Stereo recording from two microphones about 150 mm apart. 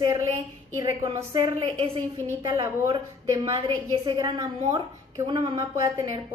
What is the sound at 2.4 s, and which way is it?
A woman's voice, 30° right (ahead or behind).